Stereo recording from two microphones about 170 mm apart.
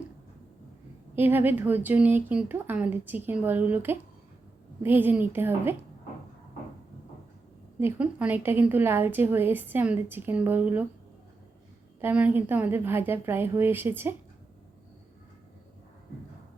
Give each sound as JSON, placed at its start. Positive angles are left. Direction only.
{"t": 1.1, "sound": "a woman's voice", "side_deg": -10}
{"t": 7.8, "sound": "a woman's voice", "side_deg": -10}
{"t": 11.9, "sound": "a woman's voice", "side_deg": -10}